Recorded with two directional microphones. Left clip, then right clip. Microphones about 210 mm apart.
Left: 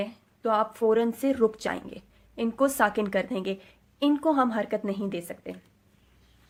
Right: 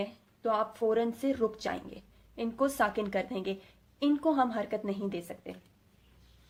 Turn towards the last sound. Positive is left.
turn(degrees=25)  # may be behind; listen again after turning